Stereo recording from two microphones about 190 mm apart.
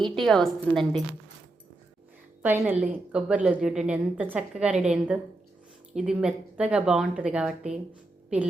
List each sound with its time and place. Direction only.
0.0 s a woman's voice: centre (ahead or behind)
2.4 s a woman's voice: 10° right (ahead or behind)